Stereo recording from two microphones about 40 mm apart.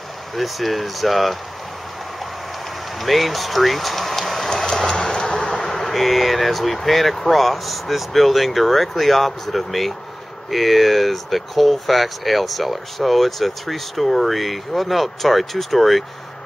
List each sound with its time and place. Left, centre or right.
0.4 s speech: centre
3.0 s speech: centre
4.5 s a sound: centre
5.4 s speech: centre